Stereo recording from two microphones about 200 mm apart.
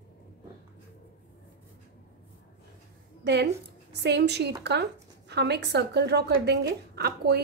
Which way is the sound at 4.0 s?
55° right (ahead or behind).